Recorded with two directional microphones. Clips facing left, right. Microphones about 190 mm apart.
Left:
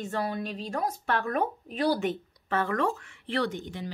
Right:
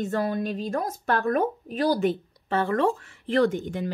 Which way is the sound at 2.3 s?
30° right (ahead or behind).